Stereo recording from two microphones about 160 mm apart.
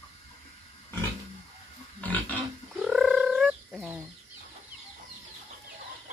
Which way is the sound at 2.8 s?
5° right (ahead or behind).